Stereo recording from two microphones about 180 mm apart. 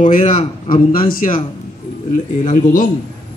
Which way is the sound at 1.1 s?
50° left (ahead or behind).